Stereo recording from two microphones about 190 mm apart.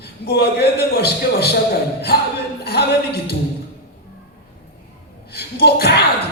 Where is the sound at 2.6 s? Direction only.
60° left (ahead or behind).